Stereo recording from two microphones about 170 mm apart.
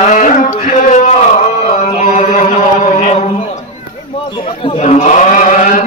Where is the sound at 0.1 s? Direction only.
45° left (ahead or behind).